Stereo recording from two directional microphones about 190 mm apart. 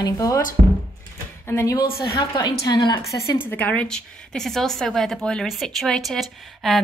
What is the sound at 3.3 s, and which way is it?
A woman's voice, 10° left (ahead or behind).